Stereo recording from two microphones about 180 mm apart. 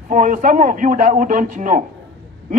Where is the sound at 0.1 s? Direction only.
45° right (ahead or behind).